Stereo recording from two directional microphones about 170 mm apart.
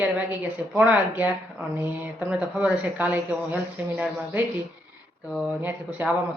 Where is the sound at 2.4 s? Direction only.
10° right (ahead or behind).